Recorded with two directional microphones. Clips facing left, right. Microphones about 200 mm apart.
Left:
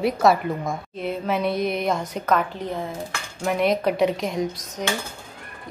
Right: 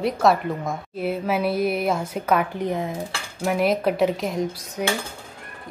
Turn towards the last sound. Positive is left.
turn(degrees=-10)  # may be behind; listen again after turning